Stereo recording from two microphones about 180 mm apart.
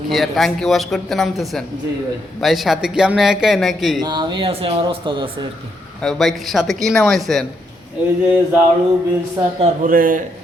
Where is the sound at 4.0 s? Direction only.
25° right (ahead or behind).